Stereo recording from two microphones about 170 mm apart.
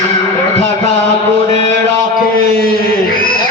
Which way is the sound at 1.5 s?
40° right (ahead or behind).